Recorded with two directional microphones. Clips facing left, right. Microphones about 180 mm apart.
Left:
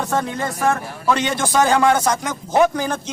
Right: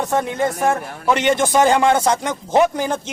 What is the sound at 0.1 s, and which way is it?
A man's voice, 20° right (ahead or behind).